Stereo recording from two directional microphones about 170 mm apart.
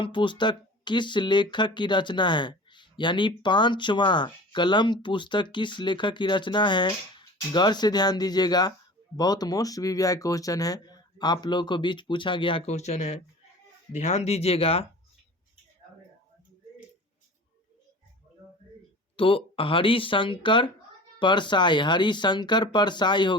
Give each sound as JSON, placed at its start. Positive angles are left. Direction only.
{"t": 0.0, "sound": "speech", "side_deg": 30}
{"t": 19.1, "sound": "speech", "side_deg": 30}